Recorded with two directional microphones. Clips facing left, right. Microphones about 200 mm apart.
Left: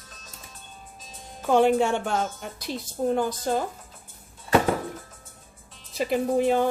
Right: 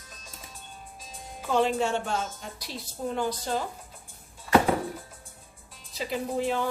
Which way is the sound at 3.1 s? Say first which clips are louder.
Left 4 dB; 50° left (ahead or behind).